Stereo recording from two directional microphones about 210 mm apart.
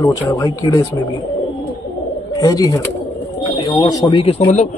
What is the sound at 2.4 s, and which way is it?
Speech, 15° left (ahead or behind).